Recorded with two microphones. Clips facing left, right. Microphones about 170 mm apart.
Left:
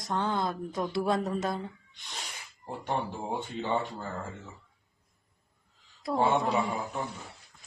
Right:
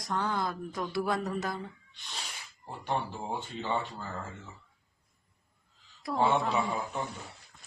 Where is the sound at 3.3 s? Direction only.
15° left (ahead or behind).